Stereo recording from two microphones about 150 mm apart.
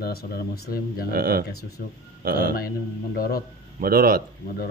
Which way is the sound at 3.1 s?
90° left.